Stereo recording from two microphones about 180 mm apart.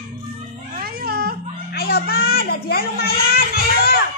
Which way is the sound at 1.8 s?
60° left (ahead or behind).